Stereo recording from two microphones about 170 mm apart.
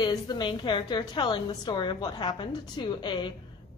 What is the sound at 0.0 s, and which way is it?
A woman's voice, 25° left (ahead or behind).